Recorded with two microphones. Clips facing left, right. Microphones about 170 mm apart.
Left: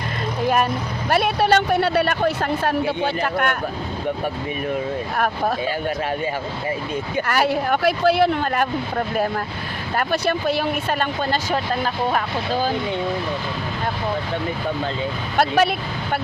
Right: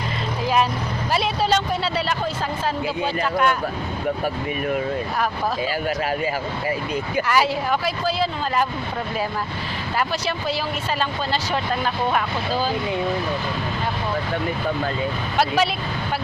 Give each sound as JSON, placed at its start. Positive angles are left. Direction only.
{"t": 0.4, "sound": "speech", "side_deg": 55}
{"t": 5.1, "sound": "speech", "side_deg": 60}
{"t": 7.3, "sound": "speech", "side_deg": 55}
{"t": 11.5, "sound": "speech", "side_deg": 40}
{"t": 15.4, "sound": "speech", "side_deg": 50}